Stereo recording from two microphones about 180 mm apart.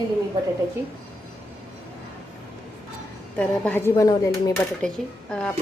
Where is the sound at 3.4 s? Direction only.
10° left (ahead or behind).